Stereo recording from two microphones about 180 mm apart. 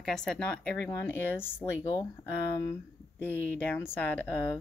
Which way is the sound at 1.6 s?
30° left (ahead or behind).